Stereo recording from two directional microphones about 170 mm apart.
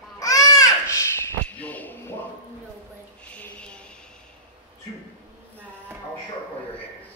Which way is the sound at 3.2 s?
5° left (ahead or behind).